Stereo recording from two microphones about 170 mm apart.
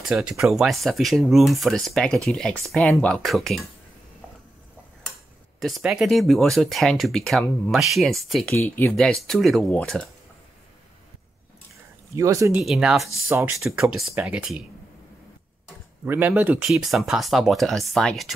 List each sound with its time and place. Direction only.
0.1 s speech: 5° right (ahead or behind)
5.6 s speech: centre (ahead or behind)
8.5 s speech: 10° left (ahead or behind)
12.2 s speech: 20° right (ahead or behind)
12.6 s speech: 5° right (ahead or behind)
13.3 s speech: 15° right (ahead or behind)
13.8 s speech: centre (ahead or behind)
16.1 s speech: 10° right (ahead or behind)